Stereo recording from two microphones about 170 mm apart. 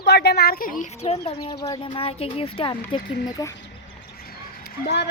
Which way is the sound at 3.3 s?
20° left (ahead or behind).